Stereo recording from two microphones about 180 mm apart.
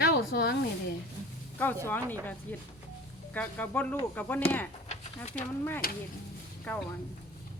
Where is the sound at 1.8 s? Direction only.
10° left (ahead or behind).